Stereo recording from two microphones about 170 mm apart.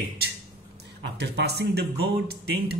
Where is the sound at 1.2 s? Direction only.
75° right (ahead or behind).